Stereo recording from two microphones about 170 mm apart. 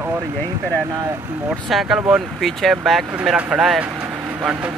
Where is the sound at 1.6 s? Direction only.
Centre (ahead or behind).